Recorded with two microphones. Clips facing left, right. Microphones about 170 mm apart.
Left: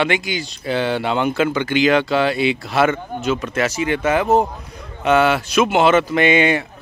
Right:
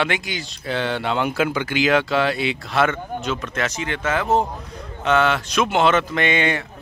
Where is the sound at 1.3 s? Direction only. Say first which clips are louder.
Left 3 dB; 5° right (ahead or behind).